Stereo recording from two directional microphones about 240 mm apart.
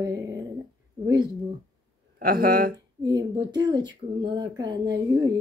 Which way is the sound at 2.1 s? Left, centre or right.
Right.